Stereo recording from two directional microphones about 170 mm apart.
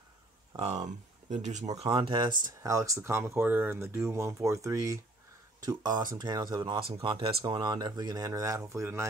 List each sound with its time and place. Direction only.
0.6 s speech: 40° right (ahead or behind)
1.9 s speech: 30° right (ahead or behind)